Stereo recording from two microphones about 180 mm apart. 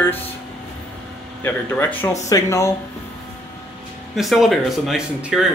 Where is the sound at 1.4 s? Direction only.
10° left (ahead or behind).